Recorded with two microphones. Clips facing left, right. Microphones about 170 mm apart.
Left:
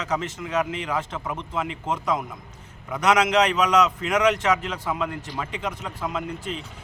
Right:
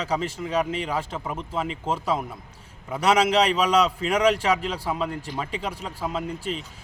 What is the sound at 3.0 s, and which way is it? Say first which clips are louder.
Speech: even; 30° right (ahead or behind).